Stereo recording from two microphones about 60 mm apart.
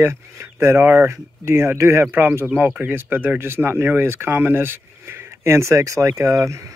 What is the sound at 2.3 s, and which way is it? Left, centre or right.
Speech, right.